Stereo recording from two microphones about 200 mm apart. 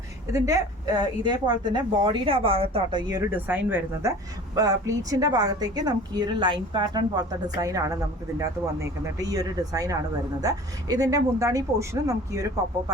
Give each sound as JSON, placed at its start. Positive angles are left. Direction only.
{"t": 0.3, "sound": "a woman's voice", "side_deg": -15}